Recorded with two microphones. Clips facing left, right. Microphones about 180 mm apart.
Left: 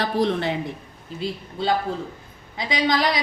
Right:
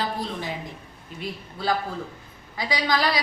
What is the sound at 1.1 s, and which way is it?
A woman's voice, 25° left (ahead or behind).